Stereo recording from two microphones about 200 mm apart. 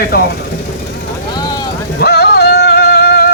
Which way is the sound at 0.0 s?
50° left (ahead or behind).